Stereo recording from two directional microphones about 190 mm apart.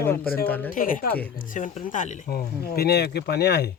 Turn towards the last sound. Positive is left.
turn(degrees=60)  # may be behind; listen again after turning